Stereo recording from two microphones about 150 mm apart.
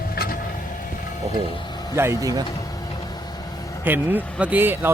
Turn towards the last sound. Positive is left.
turn(degrees=-15)  # may be behind; listen again after turning